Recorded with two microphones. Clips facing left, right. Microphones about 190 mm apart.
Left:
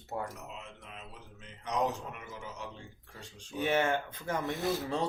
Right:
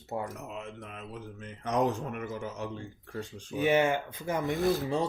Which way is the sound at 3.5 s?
10° right (ahead or behind).